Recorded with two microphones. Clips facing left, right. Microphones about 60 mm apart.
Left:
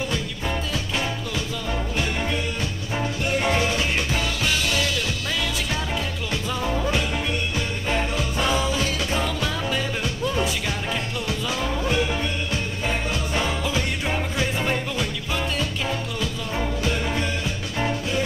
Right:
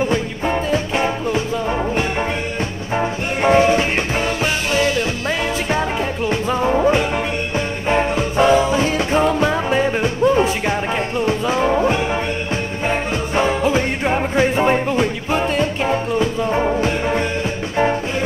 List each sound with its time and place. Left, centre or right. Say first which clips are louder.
0.0 s music: right 8 dB; right